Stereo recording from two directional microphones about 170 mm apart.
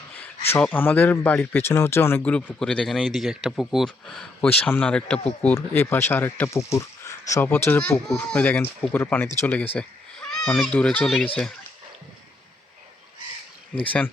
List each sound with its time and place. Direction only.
0.2 s speech: 10° left (ahead or behind)
13.7 s speech: 10° left (ahead or behind)